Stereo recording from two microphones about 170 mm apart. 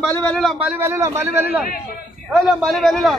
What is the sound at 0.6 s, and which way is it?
A man's voice, 15° right (ahead or behind).